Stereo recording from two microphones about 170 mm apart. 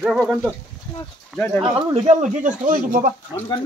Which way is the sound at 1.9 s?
45° right (ahead or behind).